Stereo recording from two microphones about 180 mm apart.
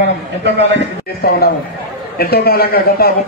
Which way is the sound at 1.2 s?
60° left (ahead or behind).